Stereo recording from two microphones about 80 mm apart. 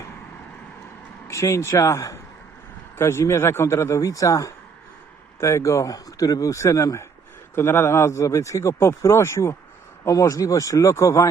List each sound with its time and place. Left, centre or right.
1.3 s speech: left